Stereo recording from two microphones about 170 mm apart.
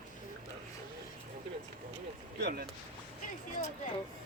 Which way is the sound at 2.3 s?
70° right (ahead or behind).